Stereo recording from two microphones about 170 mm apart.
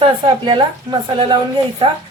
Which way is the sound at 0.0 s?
30° right (ahead or behind).